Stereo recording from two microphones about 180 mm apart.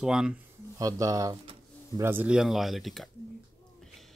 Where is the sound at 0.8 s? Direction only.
20° right (ahead or behind); by 3.0 s centre (ahead or behind).